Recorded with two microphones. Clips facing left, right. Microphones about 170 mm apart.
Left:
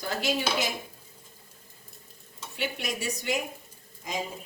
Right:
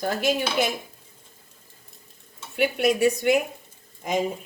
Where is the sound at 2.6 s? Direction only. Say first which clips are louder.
Right 12 dB; 60° right (ahead or behind).